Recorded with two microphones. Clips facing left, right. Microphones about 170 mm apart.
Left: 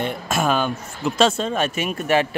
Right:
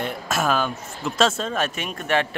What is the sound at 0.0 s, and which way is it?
A man's voice, centre (ahead or behind).